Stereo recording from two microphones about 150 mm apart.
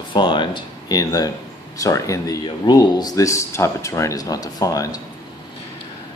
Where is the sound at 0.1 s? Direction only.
30° left (ahead or behind).